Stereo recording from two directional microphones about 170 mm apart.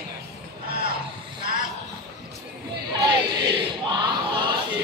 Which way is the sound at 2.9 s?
25° right (ahead or behind).